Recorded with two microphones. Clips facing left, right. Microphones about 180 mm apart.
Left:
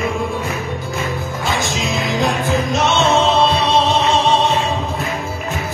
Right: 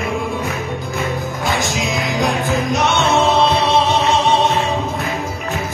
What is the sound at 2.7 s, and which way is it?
Music, 15° right (ahead or behind).